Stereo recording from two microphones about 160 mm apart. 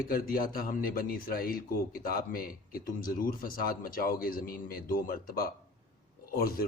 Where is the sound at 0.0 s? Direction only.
65° left (ahead or behind).